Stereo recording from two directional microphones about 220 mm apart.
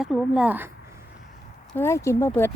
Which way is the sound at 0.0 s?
Centre (ahead or behind).